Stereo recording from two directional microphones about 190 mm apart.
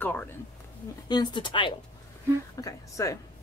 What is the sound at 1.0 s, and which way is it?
A woman's voice, 25° left (ahead or behind).